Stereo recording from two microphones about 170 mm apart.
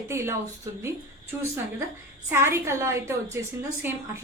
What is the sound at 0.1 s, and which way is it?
Speech, 15° right (ahead or behind).